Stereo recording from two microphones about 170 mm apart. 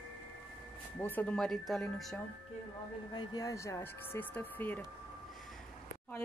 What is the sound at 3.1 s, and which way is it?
Speech, 20° left (ahead or behind).